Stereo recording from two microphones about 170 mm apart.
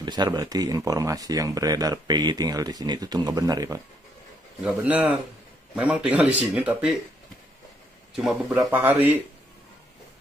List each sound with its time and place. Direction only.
0.0 s speech: 25° right (ahead or behind)
4.6 s speech: 10° right (ahead or behind)
8.2 s speech: 5° right (ahead or behind)
8.5 s speech: 15° right (ahead or behind)